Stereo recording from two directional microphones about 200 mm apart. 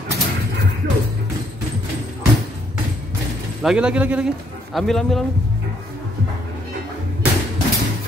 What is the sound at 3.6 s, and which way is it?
Speech, 5° right (ahead or behind).